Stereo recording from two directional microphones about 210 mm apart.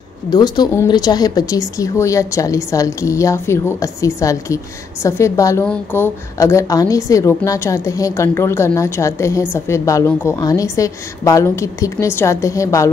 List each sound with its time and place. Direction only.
0.3 s a woman's voice: 20° left (ahead or behind)